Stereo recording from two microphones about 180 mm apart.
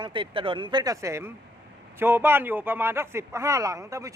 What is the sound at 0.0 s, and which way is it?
Speech, 30° right (ahead or behind).